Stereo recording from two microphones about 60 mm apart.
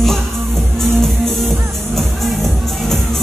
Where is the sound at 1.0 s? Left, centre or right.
Centre.